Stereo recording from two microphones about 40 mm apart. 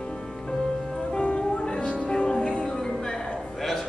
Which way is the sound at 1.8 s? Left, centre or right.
Left.